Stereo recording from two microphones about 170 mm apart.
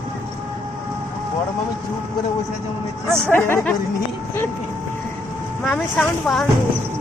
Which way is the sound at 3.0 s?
15° right (ahead or behind).